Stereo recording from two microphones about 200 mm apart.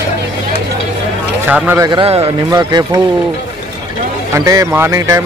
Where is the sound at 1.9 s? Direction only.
25° right (ahead or behind).